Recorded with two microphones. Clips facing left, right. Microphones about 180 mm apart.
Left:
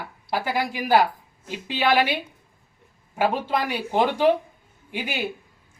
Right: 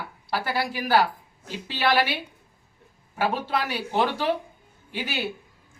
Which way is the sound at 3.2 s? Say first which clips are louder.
Left 3 dB; 15° left (ahead or behind).